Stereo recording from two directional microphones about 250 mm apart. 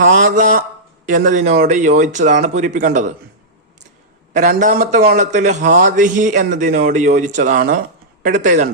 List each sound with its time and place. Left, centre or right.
0.2 s a man's voice: right
4.4 s a man's voice: right